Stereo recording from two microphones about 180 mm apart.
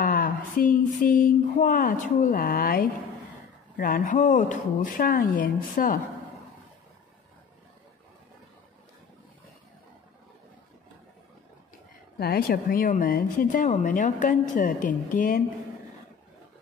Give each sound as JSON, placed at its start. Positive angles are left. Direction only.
{"t": 0.0, "sound": "speech", "side_deg": 50}
{"t": 12.2, "sound": "speech", "side_deg": 55}